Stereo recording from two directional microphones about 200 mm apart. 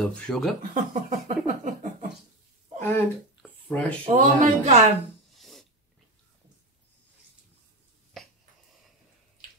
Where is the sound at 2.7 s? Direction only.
10° left (ahead or behind).